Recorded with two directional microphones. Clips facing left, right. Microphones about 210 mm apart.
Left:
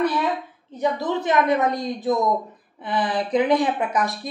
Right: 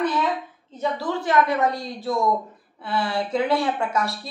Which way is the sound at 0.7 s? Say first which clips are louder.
Left 3 dB; 20° left (ahead or behind).